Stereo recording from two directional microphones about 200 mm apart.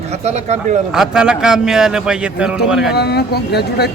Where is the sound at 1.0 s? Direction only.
5° right (ahead or behind).